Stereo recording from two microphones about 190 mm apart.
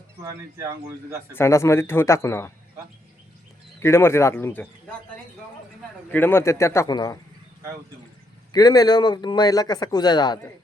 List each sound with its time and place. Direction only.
0.2 s speech: 15° right (ahead or behind)
1.3 s speech: 15° left (ahead or behind)
3.8 s speech: 15° left (ahead or behind)
6.1 s speech: 10° left (ahead or behind)
8.5 s speech: 20° left (ahead or behind)